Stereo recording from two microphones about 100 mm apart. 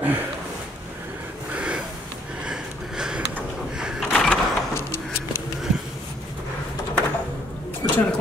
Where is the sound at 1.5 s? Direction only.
10° right (ahead or behind).